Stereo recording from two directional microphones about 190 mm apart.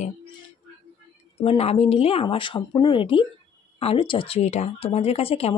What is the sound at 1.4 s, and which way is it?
Speech, 30° left (ahead or behind).